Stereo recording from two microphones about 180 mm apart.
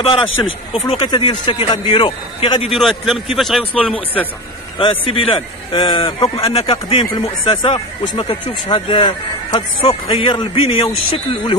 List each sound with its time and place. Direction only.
0.8 s speech: 25° left (ahead or behind)
2.7 s a man's voice: centre (ahead or behind)
4.7 s a man's voice: 30° left (ahead or behind)